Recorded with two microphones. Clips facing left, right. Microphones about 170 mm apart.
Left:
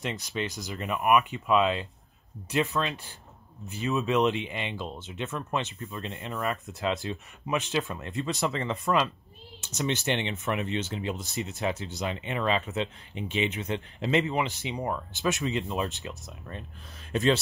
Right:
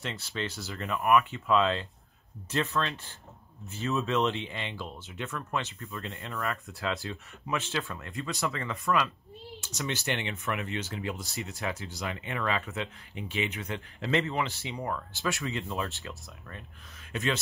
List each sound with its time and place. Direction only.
0.0 s speech: 15° left (ahead or behind); by 17.4 s 35° left (ahead or behind)